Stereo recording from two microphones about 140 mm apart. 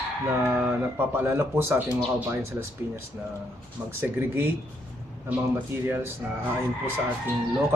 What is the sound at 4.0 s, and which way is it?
Speech, 15° right (ahead or behind).